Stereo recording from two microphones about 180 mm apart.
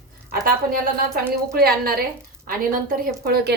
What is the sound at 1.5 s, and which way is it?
A woman's voice, 60° right (ahead or behind).